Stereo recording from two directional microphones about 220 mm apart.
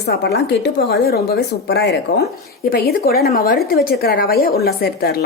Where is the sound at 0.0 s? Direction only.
45° left (ahead or behind).